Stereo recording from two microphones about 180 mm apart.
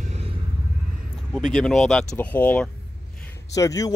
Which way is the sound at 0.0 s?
40° right (ahead or behind).